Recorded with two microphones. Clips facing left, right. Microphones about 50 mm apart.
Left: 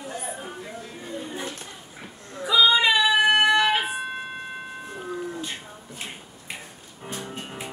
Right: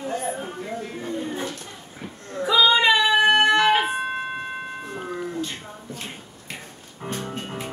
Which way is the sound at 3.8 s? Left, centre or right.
Right.